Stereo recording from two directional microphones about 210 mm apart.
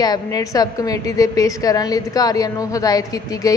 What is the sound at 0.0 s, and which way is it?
A woman's voice, 15° left (ahead or behind).